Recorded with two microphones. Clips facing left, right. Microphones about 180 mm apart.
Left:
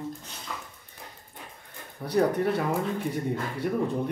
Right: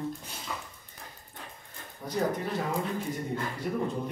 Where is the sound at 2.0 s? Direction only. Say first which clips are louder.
Left 6 dB; 65° left (ahead or behind).